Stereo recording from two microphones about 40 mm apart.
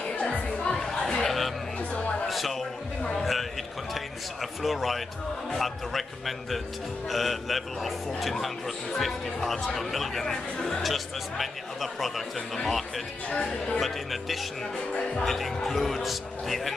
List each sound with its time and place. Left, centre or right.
0.1 s music: left
0.5 s music: centre
1.2 s a sound: centre
1.8 s music: left
2.2 s a sound: centre
3.9 s a man's voice: centre
13.3 s speech: left
13.7 s a man's voice: centre
15.0 s speech: left
15.2 s a man's voice: centre